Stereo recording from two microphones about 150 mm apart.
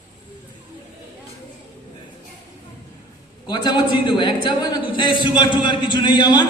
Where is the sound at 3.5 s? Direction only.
30° left (ahead or behind).